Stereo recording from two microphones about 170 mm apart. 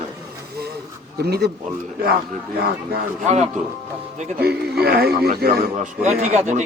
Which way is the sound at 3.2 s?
40° right (ahead or behind).